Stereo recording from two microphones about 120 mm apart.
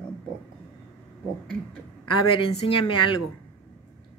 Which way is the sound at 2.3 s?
50° left (ahead or behind).